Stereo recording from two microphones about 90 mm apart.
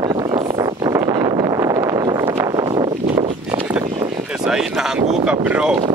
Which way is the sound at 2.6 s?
65° right (ahead or behind).